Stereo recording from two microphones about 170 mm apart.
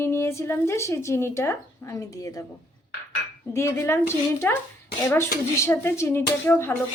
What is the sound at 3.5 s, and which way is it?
A woman's voice, 15° left (ahead or behind).